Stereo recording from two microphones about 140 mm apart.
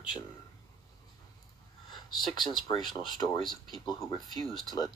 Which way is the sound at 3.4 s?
Centre (ahead or behind).